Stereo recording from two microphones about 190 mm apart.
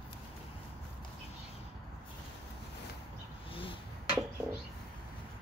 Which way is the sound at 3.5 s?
30° left (ahead or behind).